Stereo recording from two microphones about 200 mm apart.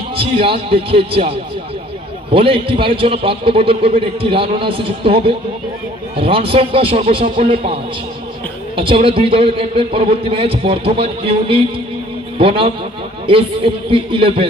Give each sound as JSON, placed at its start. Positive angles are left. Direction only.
{"t": 0.2, "sound": "a man's voice", "side_deg": -25}
{"t": 2.3, "sound": "a man's voice", "side_deg": -25}
{"t": 13.9, "sound": "a man's voice", "side_deg": -25}